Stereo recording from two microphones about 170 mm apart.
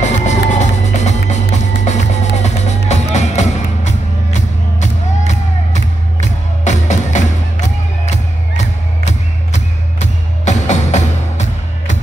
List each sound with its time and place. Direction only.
0.0 s music: 45° left (ahead or behind)
9.5 s music: 45° left (ahead or behind)